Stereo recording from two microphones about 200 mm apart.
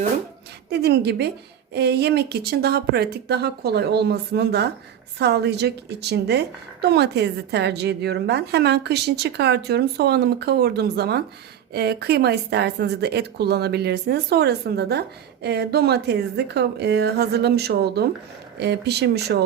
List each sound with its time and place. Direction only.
0.7 s a woman's voice: 55° right (ahead or behind)